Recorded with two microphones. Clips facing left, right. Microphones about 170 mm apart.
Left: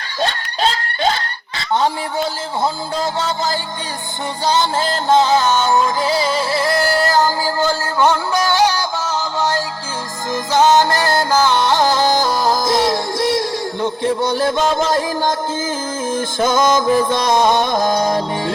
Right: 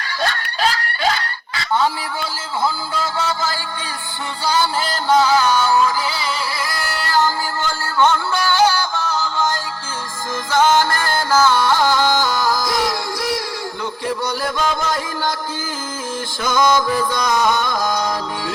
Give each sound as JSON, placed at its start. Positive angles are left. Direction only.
{"t": 0.2, "sound": "snicker", "side_deg": 25}
{"t": 2.9, "sound": "music", "side_deg": 40}
{"t": 4.8, "sound": "music", "side_deg": 25}
{"t": 7.0, "sound": "music", "side_deg": 35}
{"t": 7.9, "sound": "music", "side_deg": 15}
{"t": 10.5, "sound": "music", "side_deg": 20}
{"t": 16.1, "sound": "music", "side_deg": 45}
{"t": 16.6, "sound": "music", "side_deg": 25}